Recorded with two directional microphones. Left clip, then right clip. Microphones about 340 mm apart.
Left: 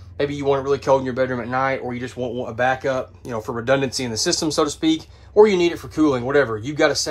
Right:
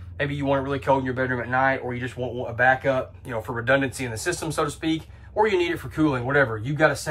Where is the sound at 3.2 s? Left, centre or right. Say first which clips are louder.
Left 2 dB; centre.